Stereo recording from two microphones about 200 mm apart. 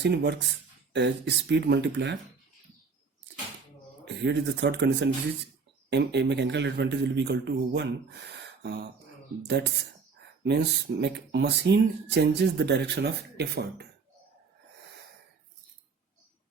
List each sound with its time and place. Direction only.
0.0 s speech: 55° right (ahead or behind)
4.0 s speech: 60° right (ahead or behind)
9.5 s speech: 60° right (ahead or behind)